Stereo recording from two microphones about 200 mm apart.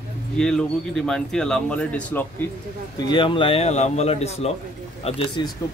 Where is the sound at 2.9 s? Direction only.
20° left (ahead or behind).